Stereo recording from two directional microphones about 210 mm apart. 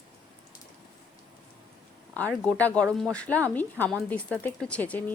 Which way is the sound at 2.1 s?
5° left (ahead or behind).